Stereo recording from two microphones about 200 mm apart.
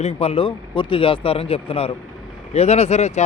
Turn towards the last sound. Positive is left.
turn(degrees=35)  # may be behind; listen again after turning